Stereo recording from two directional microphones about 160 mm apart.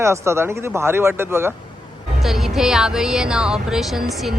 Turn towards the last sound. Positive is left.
turn(degrees=0)  # may be behind; listen again after turning